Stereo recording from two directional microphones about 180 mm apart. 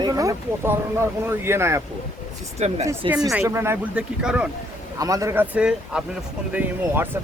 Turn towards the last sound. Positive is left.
turn(degrees=-10)  # may be behind; listen again after turning